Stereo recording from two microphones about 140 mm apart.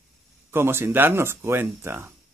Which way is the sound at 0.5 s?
15° right (ahead or behind).